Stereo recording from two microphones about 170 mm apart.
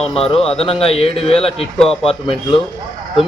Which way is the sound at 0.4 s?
35° left (ahead or behind).